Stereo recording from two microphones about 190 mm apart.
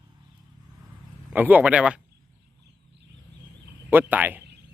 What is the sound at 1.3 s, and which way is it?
Speech, 10° right (ahead or behind).